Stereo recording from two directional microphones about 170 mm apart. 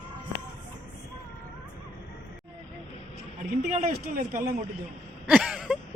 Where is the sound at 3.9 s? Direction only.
55° right (ahead or behind).